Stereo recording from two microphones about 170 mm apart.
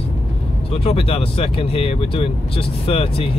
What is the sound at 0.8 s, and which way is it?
Speech, 35° left (ahead or behind).